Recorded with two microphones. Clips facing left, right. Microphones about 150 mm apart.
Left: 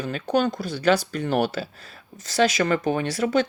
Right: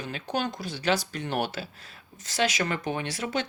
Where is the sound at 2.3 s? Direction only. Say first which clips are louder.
Left 7 dB; 35° left (ahead or behind).